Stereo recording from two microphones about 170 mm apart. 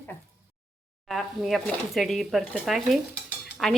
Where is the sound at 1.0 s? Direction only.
Centre (ahead or behind).